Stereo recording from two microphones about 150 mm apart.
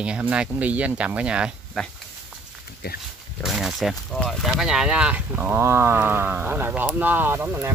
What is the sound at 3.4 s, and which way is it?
Speech, centre (ahead or behind).